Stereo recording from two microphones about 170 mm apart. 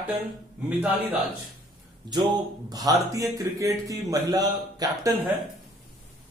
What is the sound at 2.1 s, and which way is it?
Speech, 25° right (ahead or behind).